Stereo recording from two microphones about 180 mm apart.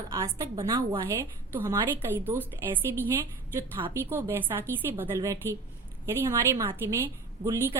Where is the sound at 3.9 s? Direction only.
15° right (ahead or behind).